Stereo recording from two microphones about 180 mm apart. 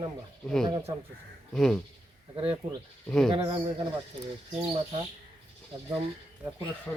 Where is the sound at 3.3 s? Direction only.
30° right (ahead or behind).